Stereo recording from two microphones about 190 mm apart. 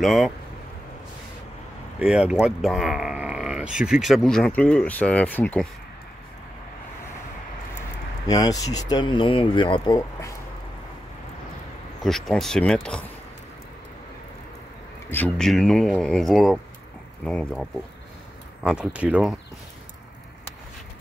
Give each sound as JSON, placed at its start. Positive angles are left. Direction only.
{"t": 0.0, "sound": "speech", "side_deg": 0}
{"t": 2.0, "sound": "speech", "side_deg": -5}
{"t": 8.3, "sound": "speech", "side_deg": 20}
{"t": 12.0, "sound": "speech", "side_deg": 0}
{"t": 15.0, "sound": "speech", "side_deg": 10}
{"t": 18.6, "sound": "speech", "side_deg": -5}